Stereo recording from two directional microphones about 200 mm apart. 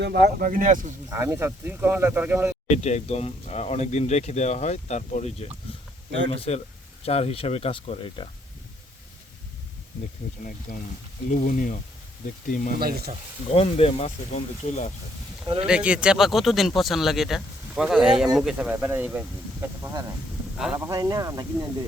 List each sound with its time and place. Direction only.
0.0 s speech: 55° right (ahead or behind)
1.1 s speech: 15° right (ahead or behind)
2.6 s speech: 35° left (ahead or behind)
6.1 s speech: 65° right (ahead or behind)
6.3 s speech: 30° left (ahead or behind)
11.3 s speech: 40° left (ahead or behind)
13.5 s speech: 30° left (ahead or behind)
15.6 s speech: 5° right (ahead or behind)